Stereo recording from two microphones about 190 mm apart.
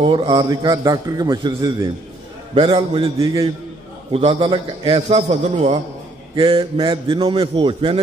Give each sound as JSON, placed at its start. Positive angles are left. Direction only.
{"t": 0.0, "sound": "a man's voice", "side_deg": -25}
{"t": 6.3, "sound": "a man's voice", "side_deg": -25}